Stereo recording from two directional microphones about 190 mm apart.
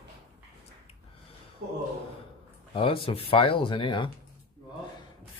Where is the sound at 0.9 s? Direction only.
30° left (ahead or behind).